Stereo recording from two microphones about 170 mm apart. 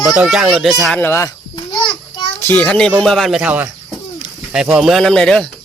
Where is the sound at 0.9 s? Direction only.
15° left (ahead or behind).